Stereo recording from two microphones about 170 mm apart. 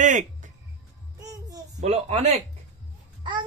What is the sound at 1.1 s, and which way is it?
Child singing, 20° right (ahead or behind).